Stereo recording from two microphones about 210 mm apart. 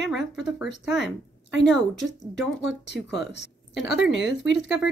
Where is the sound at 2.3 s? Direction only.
Centre (ahead or behind).